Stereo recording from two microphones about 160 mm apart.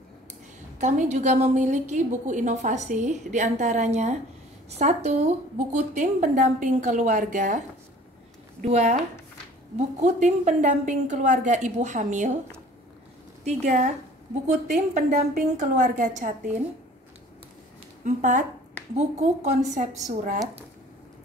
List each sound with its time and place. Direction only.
0.7 s a woman's voice: 50° right (ahead or behind)
8.6 s a woman's voice: 45° right (ahead or behind)
13.4 s a woman's voice: 45° right (ahead or behind)
18.0 s a woman's voice: 50° right (ahead or behind)